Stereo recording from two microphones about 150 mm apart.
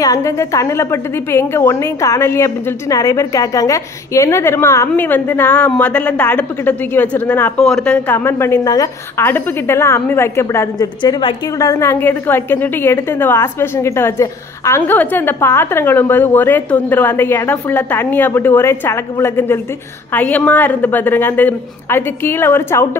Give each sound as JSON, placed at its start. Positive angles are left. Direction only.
{"t": 0.0, "sound": "a woman's voice", "side_deg": 20}
{"t": 11.0, "sound": "a woman's voice", "side_deg": 30}